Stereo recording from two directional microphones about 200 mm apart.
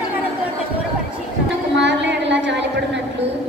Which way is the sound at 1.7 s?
60° right (ahead or behind).